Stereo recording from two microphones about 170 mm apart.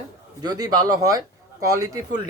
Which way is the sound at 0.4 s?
25° right (ahead or behind).